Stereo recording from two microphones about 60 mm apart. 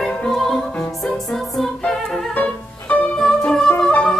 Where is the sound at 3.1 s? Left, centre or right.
Centre.